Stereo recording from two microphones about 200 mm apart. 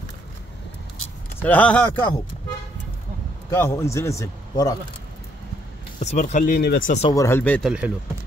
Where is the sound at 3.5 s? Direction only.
15° left (ahead or behind).